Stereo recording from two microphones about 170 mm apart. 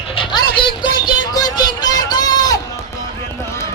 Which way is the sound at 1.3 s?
25° left (ahead or behind).